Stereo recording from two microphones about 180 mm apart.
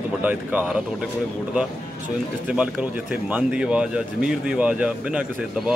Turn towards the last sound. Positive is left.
turn(degrees=-5)  # may be behind; listen again after turning